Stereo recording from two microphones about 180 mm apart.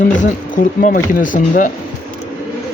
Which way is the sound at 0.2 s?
50° left (ahead or behind).